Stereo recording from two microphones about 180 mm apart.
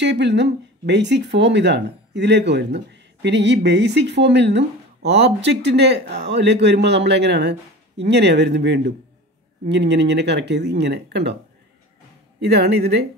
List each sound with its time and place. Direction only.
0.0 s speech: 75° right (ahead or behind)